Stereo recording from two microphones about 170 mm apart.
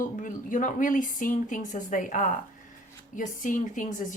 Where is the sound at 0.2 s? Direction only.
50° left (ahead or behind).